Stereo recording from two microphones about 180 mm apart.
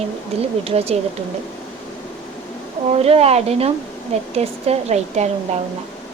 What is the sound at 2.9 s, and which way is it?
Speech, 35° right (ahead or behind).